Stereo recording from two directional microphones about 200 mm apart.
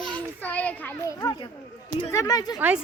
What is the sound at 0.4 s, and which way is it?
A child's voice, 5° left (ahead or behind).